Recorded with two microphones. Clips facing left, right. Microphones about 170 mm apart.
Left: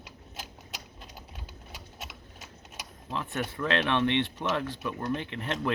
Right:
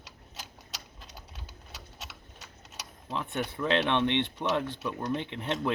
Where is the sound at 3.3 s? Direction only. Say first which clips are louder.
Even; centre (ahead or behind).